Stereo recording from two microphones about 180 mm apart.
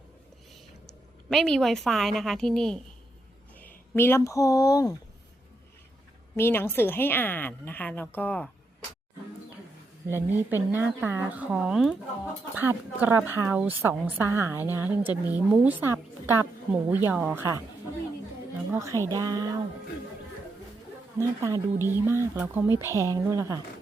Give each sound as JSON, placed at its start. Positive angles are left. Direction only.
{"t": 1.3, "sound": "a woman's voice", "side_deg": 0}
{"t": 3.9, "sound": "a woman's voice", "side_deg": 15}
{"t": 6.3, "sound": "a woman's voice", "side_deg": 15}
{"t": 10.1, "sound": "speech", "side_deg": -10}
{"t": 18.7, "sound": "speech", "side_deg": -15}
{"t": 21.2, "sound": "speech", "side_deg": -15}